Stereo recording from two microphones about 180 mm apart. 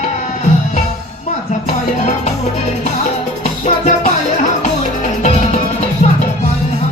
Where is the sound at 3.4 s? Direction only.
35° left (ahead or behind).